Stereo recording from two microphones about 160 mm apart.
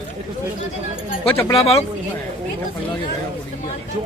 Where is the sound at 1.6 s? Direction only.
40° left (ahead or behind).